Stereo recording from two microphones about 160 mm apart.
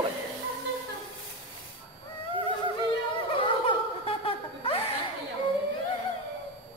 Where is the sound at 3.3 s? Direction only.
35° left (ahead or behind).